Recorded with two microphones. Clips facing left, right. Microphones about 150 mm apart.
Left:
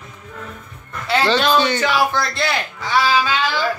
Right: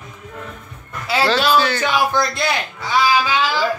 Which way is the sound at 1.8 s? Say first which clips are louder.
Even; 15° right (ahead or behind).